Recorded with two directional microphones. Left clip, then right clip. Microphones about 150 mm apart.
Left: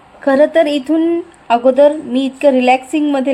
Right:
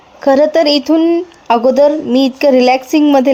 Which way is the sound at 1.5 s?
50° right (ahead or behind).